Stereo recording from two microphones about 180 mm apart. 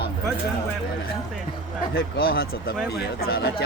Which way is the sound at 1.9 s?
55° left (ahead or behind).